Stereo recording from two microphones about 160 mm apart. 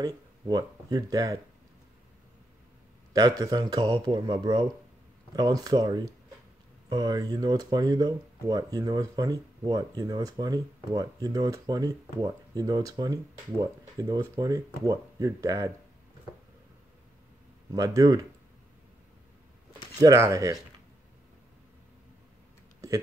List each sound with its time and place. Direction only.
0.0 s speech: 25° right (ahead or behind)
3.1 s speech: 20° right (ahead or behind)
17.7 s speech: 20° right (ahead or behind)
20.0 s speech: 20° right (ahead or behind)